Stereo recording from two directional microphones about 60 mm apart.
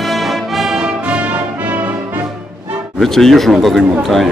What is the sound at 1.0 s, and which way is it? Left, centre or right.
Brass instrument, right.